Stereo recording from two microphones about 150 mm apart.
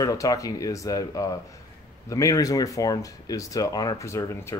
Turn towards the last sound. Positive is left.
turn(degrees=20)  # may be behind; listen again after turning